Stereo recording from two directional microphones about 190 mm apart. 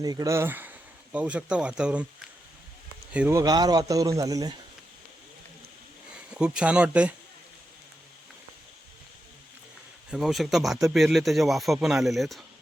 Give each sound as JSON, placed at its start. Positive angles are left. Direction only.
{"t": 0.0, "sound": "speech", "side_deg": -20}
{"t": 6.1, "sound": "speech", "side_deg": -5}
{"t": 10.1, "sound": "speech", "side_deg": 0}